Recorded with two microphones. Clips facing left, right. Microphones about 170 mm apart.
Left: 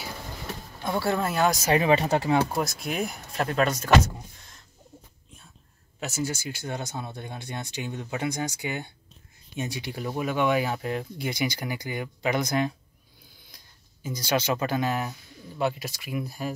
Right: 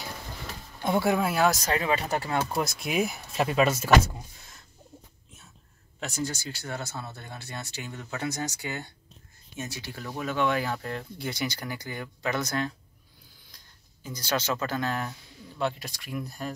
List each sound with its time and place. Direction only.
0.8 s speech: 15° right (ahead or behind); by 1.7 s centre (ahead or behind)
1.7 s speech: 20° left (ahead or behind)
2.6 s speech: centre (ahead or behind)
5.9 s speech: 5° left (ahead or behind)
14.0 s speech: 10° left (ahead or behind)